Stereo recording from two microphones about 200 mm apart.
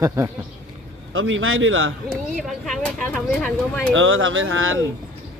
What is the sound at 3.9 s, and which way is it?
Speech, 80° right.